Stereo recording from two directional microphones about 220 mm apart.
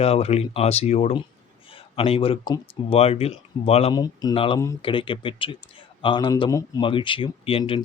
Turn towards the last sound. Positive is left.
turn(degrees=25)  # may be behind; listen again after turning